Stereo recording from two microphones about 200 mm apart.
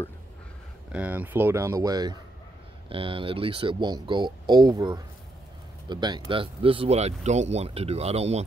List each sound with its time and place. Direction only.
0.9 s speech: 10° right (ahead or behind); by 8.5 s 30° right (ahead or behind)